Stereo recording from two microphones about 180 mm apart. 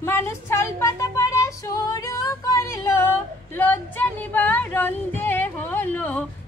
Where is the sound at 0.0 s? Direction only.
15° left (ahead or behind).